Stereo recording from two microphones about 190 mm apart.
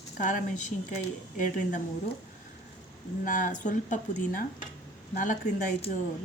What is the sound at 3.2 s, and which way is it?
A woman's voice, 45° left (ahead or behind).